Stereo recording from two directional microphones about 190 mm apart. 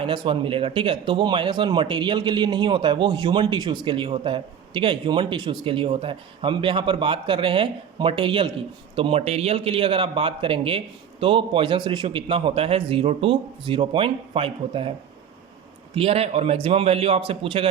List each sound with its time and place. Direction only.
0.0 s speech: 30° right (ahead or behind)
16.0 s a man's voice: 30° right (ahead or behind)